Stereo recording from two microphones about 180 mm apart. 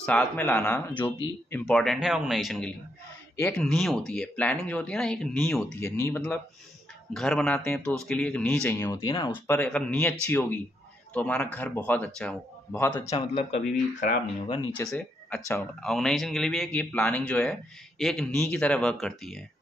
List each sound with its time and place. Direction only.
0.0 s a man's voice: 5° left (ahead or behind)
5.8 s a man's voice: 15° left (ahead or behind)
7.2 s a man's voice: 5° left (ahead or behind)
13.1 s speech: 35° left (ahead or behind)
14.9 s a man's voice: 5° left (ahead or behind)